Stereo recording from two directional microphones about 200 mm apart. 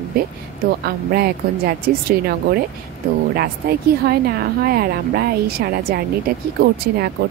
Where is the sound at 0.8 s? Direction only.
50° right (ahead or behind).